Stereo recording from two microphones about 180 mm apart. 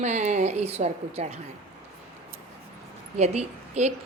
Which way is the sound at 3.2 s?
40° right (ahead or behind).